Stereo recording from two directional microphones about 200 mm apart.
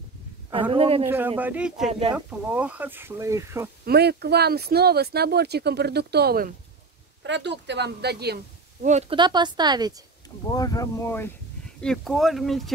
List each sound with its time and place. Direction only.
0.5 s a woman's voice: 25° right (ahead or behind)
1.0 s speech: 10° right (ahead or behind)
1.9 s speech: 30° right (ahead or behind)
2.1 s speech: 5° right (ahead or behind)
3.8 s speech: 55° right (ahead or behind)
7.2 s speech: 60° right (ahead or behind)
9.1 s speech: 20° right (ahead or behind)
10.5 s speech: 20° left (ahead or behind)
11.8 s speech: centre (ahead or behind)